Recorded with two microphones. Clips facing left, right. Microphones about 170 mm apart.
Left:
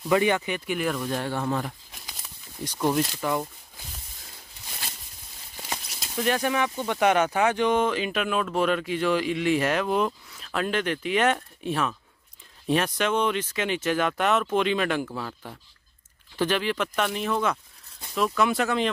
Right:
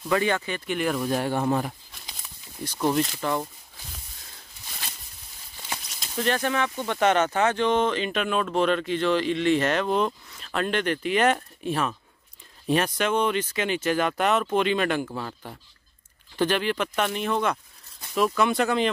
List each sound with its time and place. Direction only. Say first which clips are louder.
0.1 s speech: left 2 dB; 15° left (ahead or behind)
0.7 s speech: right 3 dB; centre (ahead or behind)
1.0 s speech: right 3 dB; 15° right (ahead or behind)
2.6 s speech: even; 10° left (ahead or behind)
5.6 s speech: left 1 dB; 10° left (ahead or behind)